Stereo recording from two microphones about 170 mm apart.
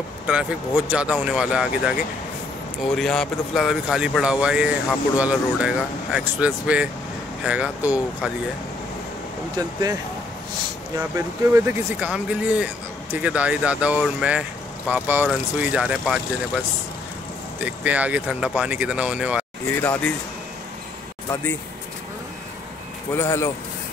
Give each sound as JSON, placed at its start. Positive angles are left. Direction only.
{"t": 0.3, "sound": "speech", "side_deg": -5}
{"t": 9.6, "sound": "speech", "side_deg": -20}
{"t": 11.0, "sound": "speech", "side_deg": -15}
{"t": 17.6, "sound": "speech", "side_deg": -10}
{"t": 19.7, "sound": "speech", "side_deg": 10}
{"t": 23.1, "sound": "speech", "side_deg": 15}